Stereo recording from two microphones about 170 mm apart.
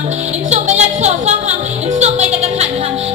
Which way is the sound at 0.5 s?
40° right (ahead or behind).